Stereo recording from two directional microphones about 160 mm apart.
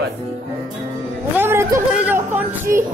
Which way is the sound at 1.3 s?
15° right (ahead or behind).